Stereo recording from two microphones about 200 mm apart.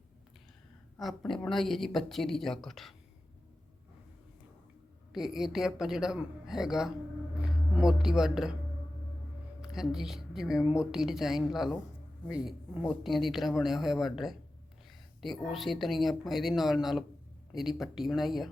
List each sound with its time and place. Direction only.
0.9 s a woman's voice: centre (ahead or behind)
5.1 s a woman's voice: centre (ahead or behind)
9.6 s a woman's voice: 5° right (ahead or behind)